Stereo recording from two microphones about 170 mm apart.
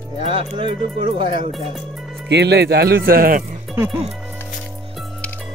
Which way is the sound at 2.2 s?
80° right.